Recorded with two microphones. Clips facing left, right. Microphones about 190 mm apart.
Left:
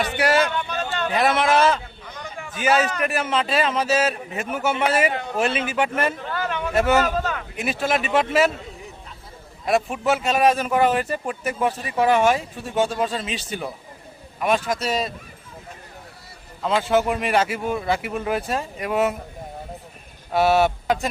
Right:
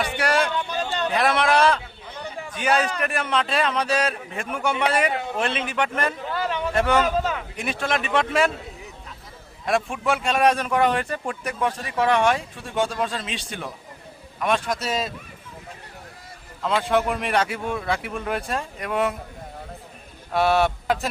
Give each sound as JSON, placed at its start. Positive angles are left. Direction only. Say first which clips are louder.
{"t": 0.0, "sound": "a sound", "louder": "left 3 dB", "side_deg": 0}
{"t": 1.0, "sound": "speech", "louder": "left 1 dB", "side_deg": 0}
{"t": 2.0, "sound": "a sound", "louder": "right 3 dB", "side_deg": -30}
{"t": 2.5, "sound": "a man's voice", "louder": "left 2 dB", "side_deg": 5}
{"t": 7.2, "sound": "a sound", "louder": "right 1 dB", "side_deg": -10}
{"t": 7.5, "sound": "speech", "louder": "left 6 dB", "side_deg": 5}
{"t": 9.6, "sound": "speech", "louder": "left 2 dB", "side_deg": 5}
{"t": 16.6, "sound": "speech", "louder": "left 2 dB", "side_deg": 0}
{"t": 20.3, "sound": "speech", "louder": "left 2 dB", "side_deg": 0}